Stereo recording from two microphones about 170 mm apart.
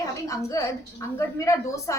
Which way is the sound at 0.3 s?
20° left (ahead or behind).